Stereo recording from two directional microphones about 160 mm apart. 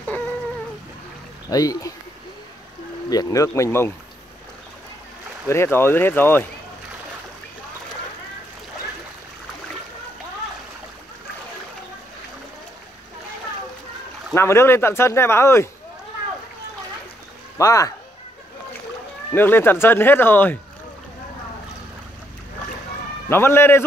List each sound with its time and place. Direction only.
1.5 s speech: 20° left (ahead or behind)
3.1 s speech: 20° left (ahead or behind)
5.5 s speech: 15° left (ahead or behind)
14.3 s speech: 15° left (ahead or behind)
17.6 s speech: 20° left (ahead or behind)
19.3 s speech: 15° left (ahead or behind)
23.2 s speech: 15° left (ahead or behind)